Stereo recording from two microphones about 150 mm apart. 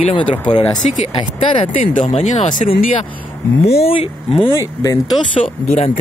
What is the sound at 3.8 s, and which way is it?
Speech, 40° left (ahead or behind).